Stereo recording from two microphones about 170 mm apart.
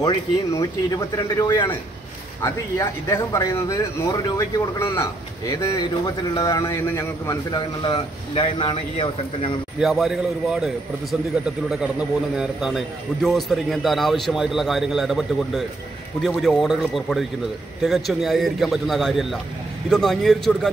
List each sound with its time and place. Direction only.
0.0 s speech: 20° left (ahead or behind)
7.8 s speech: 30° left (ahead or behind)
9.8 s a man's voice: centre (ahead or behind)